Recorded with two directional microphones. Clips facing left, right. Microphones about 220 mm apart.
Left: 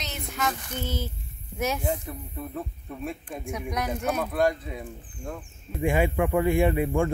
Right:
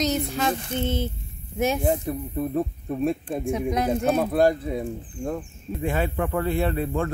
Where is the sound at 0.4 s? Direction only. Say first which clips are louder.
Right 5 dB; 30° right (ahead or behind).